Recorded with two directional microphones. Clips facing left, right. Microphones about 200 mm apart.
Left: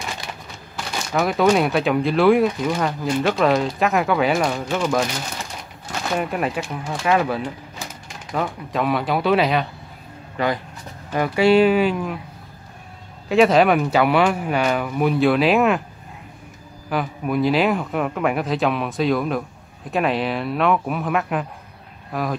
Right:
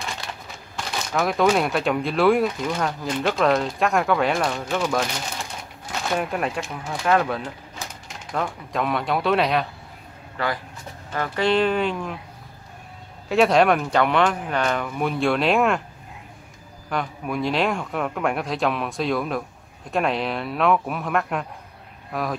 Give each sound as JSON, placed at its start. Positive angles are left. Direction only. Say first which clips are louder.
{"t": 1.1, "sound": "speech", "louder": "left 3 dB", "side_deg": 0}
{"t": 10.3, "sound": "speech", "louder": "left 4 dB", "side_deg": 20}
{"t": 13.3, "sound": "speech", "louder": "left 2 dB", "side_deg": 0}
{"t": 16.9, "sound": "speech", "louder": "left 4 dB", "side_deg": 5}